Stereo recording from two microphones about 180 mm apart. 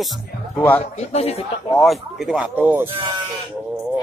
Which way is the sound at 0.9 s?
35° left (ahead or behind).